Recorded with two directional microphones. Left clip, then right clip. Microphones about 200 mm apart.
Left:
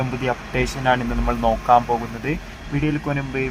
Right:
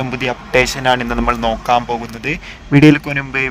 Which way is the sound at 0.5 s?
45° right (ahead or behind).